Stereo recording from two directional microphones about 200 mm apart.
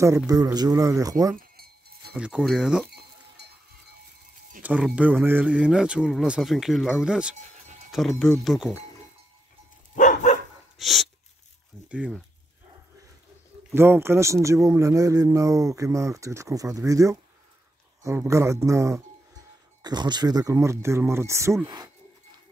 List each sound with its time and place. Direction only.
0.3 s speech: 20° right (ahead or behind)
1.3 s chink: 50° right (ahead or behind)
2.1 s a man's voice: 5° right (ahead or behind)
4.6 s a man's voice: 5° right (ahead or behind)
9.9 s dog: 40° left (ahead or behind)
10.8 s a sound: centre (ahead or behind)
11.9 s speech: 5° right (ahead or behind)
13.7 s speech: 10° right (ahead or behind)